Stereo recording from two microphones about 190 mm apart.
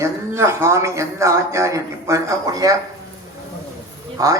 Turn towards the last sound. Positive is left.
turn(degrees=-20)  # may be behind; listen again after turning